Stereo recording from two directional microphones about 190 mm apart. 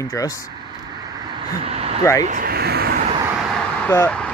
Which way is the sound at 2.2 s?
45° right (ahead or behind).